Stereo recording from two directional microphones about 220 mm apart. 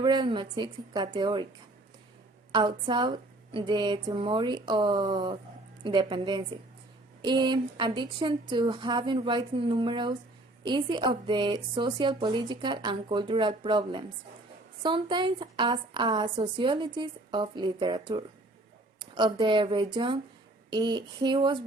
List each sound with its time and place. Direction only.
0.0 s a woman's voice: 20° right (ahead or behind)
2.5 s a woman's voice: 20° right (ahead or behind)